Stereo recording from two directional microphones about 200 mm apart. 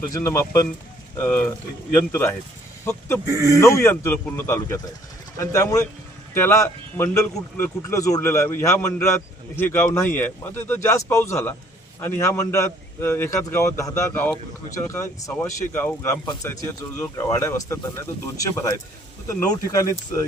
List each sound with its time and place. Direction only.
0.1 s speech: 15° left (ahead or behind)